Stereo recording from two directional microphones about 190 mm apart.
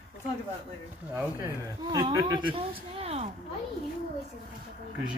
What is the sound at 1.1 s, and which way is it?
A child's voice, 15° right (ahead or behind).